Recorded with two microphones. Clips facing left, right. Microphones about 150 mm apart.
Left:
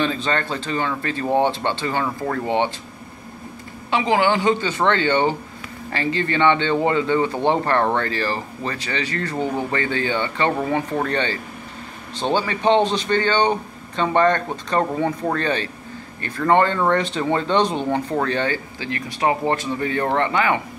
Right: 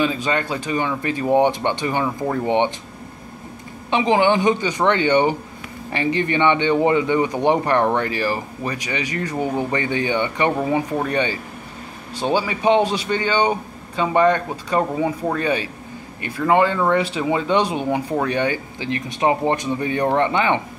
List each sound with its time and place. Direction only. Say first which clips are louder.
0.0 s speech: right 1 dB; 10° right (ahead or behind)
3.9 s speech: right 2 dB; 20° right (ahead or behind)